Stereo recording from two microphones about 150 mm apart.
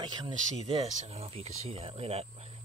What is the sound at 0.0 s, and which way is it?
Speech, 30° right (ahead or behind).